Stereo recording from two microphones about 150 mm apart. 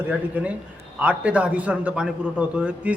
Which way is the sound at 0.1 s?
10° right (ahead or behind).